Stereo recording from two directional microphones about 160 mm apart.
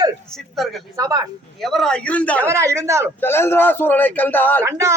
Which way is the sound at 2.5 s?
15° right (ahead or behind).